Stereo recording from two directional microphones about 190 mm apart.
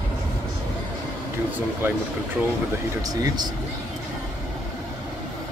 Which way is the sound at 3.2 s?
20° right (ahead or behind).